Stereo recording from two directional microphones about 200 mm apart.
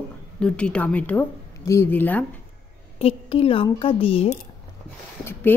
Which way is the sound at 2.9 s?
30° left (ahead or behind).